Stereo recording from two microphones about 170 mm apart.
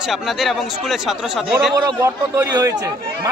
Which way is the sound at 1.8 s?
15° right (ahead or behind).